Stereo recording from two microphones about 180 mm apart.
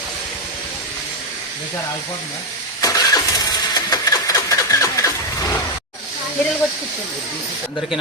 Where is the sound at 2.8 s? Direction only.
20° left (ahead or behind).